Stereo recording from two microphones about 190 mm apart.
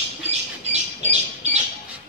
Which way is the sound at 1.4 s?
35° right (ahead or behind).